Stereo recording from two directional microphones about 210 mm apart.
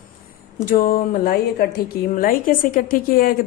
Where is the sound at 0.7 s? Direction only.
45° left (ahead or behind).